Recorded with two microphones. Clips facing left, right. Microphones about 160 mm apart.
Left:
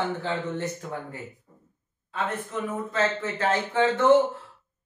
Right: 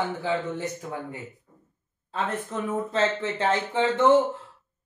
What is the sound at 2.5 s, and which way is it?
Speech, 35° right (ahead or behind).